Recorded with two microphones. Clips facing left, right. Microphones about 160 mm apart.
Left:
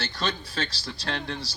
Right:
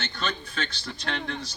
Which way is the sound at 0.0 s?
35° left (ahead or behind).